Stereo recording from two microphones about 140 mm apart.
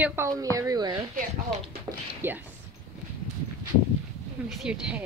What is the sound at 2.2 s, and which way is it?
Speech, 15° right (ahead or behind).